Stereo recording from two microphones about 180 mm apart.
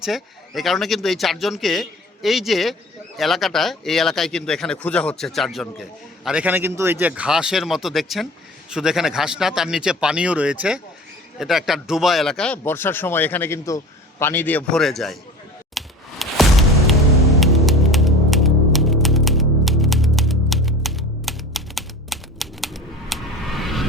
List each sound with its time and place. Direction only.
0.0 s speech: centre (ahead or behind)
15.7 s music: centre (ahead or behind)